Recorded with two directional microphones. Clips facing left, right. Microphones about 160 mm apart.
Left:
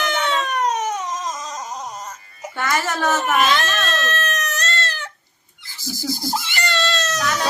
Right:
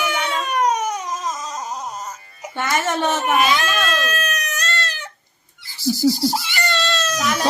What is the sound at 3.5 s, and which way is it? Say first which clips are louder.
Baby cry: right 1 dB; 10° right (ahead or behind).